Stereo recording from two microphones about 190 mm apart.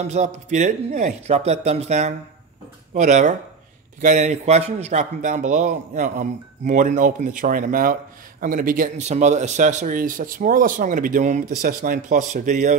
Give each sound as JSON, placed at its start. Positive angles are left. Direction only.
{"t": 0.0, "sound": "a man's voice", "side_deg": -35}